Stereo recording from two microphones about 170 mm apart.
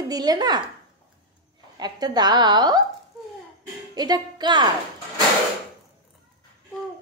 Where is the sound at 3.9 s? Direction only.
25° right (ahead or behind).